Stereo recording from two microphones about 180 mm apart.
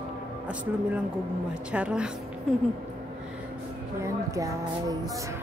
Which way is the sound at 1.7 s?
5° right (ahead or behind).